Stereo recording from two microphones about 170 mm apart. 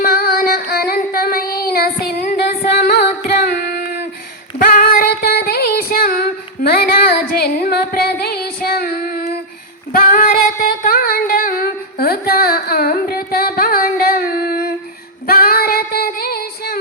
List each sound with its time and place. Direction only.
0.0 s child singing: 65° left (ahead or behind)
2.3 s music: 65° left (ahead or behind)
4.5 s female singing: 55° left (ahead or behind)
9.9 s singing: 55° left (ahead or behind)
15.3 s female singing: 60° left (ahead or behind)